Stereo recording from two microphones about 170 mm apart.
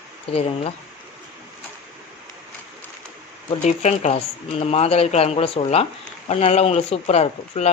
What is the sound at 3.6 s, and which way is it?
Speech, 40° left (ahead or behind).